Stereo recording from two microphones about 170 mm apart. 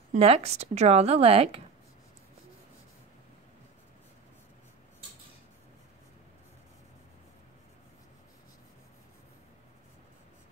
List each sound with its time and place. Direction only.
0.1 s a woman's voice: 35° right (ahead or behind)